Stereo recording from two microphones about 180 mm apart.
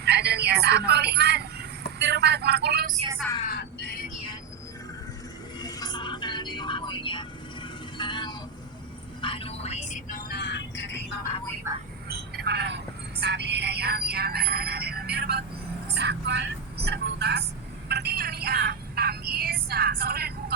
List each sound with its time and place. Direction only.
0.0 s a sound: 65° right (ahead or behind)
3.5 s crow: 70° left (ahead or behind)
5.5 s vehicle: 25° left (ahead or behind)
9.2 s music: 30° left (ahead or behind); by 11.0 s 75° left (ahead or behind)
11.7 s speech: 20° right (ahead or behind)
12.0 s vehicle: 65° right (ahead or behind)
15.9 s a woman's voice: 65° right (ahead or behind)
17.8 s a sound: 65° right (ahead or behind)